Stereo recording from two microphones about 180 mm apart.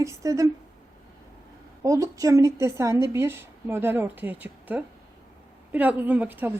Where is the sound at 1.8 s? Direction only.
20° right (ahead or behind).